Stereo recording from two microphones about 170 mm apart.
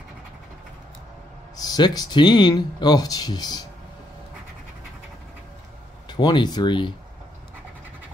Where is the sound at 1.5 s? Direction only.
25° left (ahead or behind).